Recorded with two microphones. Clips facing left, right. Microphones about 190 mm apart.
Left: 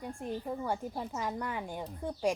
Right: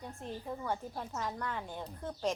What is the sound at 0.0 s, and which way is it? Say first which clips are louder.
Speech: left 5 dB; 10° left (ahead or behind).